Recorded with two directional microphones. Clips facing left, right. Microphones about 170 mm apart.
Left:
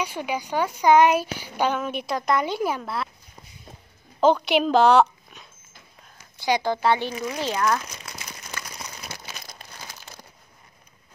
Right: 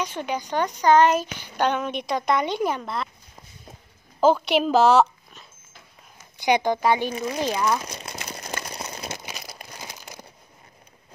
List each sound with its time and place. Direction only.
0.0 s speech: 10° left (ahead or behind)
4.2 s speech: 5° right (ahead or behind)
6.4 s speech: 20° right (ahead or behind)
7.8 s crumpling: 30° right (ahead or behind)
8.4 s a sound: 35° right (ahead or behind)
9.2 s crumpling: 10° right (ahead or behind)